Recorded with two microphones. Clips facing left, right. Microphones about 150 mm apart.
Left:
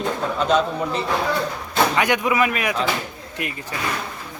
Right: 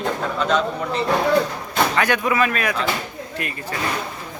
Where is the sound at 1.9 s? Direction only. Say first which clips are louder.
Even; 15° left (ahead or behind).